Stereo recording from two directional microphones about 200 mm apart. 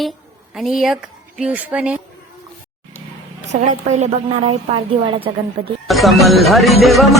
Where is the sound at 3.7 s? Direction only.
35° right (ahead or behind).